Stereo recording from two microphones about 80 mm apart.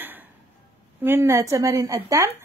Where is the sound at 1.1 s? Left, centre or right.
Right.